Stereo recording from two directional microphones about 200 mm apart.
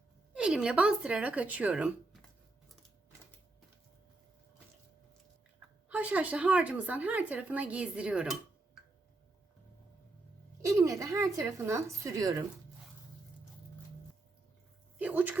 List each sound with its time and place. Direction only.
0.3 s speech: 5° right (ahead or behind)
5.9 s a woman's voice: 10° right (ahead or behind)
10.8 s a woman's voice: 15° right (ahead or behind)
14.9 s speech: 10° right (ahead or behind)